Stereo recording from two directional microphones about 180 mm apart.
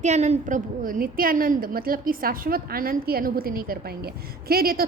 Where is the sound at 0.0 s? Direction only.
40° right (ahead or behind).